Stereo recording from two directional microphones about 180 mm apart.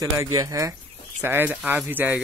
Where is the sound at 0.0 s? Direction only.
20° right (ahead or behind).